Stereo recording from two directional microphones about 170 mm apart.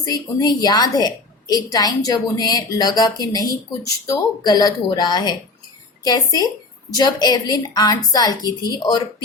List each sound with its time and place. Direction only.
0.0 s a woman's voice: 25° left (ahead or behind)